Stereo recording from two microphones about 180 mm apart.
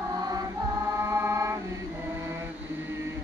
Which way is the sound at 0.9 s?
15° right (ahead or behind).